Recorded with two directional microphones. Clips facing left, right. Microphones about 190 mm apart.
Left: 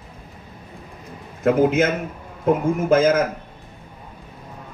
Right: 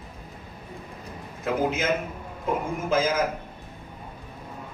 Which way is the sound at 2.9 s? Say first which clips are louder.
Left 8 dB; 55° left (ahead or behind).